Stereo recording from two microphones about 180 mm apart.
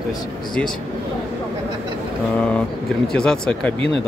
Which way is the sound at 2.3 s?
5° left (ahead or behind).